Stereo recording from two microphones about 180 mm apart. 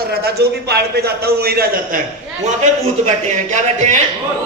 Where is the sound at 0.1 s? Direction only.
60° right (ahead or behind).